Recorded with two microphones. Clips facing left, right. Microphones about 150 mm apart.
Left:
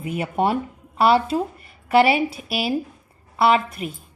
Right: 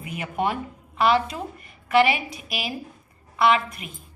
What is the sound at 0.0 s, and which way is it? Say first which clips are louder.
A woman's voice: left 5 dB; 35° left (ahead or behind).